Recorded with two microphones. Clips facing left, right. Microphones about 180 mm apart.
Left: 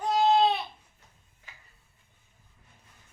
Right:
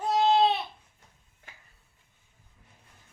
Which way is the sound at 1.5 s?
55° right (ahead or behind).